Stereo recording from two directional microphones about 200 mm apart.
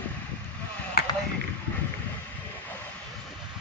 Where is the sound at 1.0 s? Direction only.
50° left (ahead or behind).